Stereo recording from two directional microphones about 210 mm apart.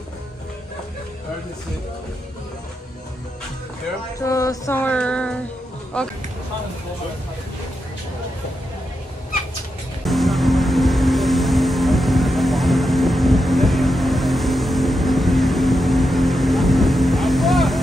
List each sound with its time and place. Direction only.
4.2 s music: 15° left (ahead or behind)
6.0 s speech: 5° left (ahead or behind)
10.0 s music: centre (ahead or behind)